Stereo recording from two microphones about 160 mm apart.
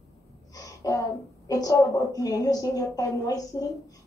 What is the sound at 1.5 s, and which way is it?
A woman's voice, 20° left (ahead or behind).